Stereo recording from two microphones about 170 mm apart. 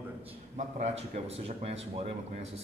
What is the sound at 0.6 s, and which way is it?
Speech, 40° right (ahead or behind).